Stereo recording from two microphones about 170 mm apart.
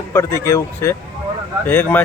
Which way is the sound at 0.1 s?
15° left (ahead or behind).